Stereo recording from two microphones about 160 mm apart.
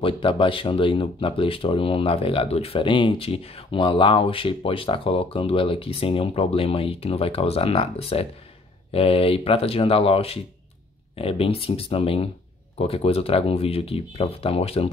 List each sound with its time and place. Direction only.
0.0 s speech: 35° left (ahead or behind)